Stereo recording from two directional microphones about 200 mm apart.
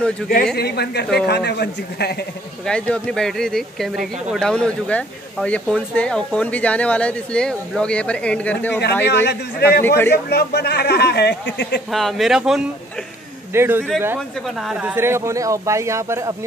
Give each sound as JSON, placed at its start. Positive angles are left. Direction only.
{"t": 0.2, "sound": "speech", "side_deg": 5}
{"t": 0.6, "sound": "speech", "side_deg": 55}
{"t": 2.6, "sound": "speech", "side_deg": 5}
{"t": 9.0, "sound": "speech", "side_deg": 55}
{"t": 9.8, "sound": "a man's voice", "side_deg": 10}
{"t": 10.1, "sound": "speech", "side_deg": 55}
{"t": 11.9, "sound": "speech", "side_deg": 0}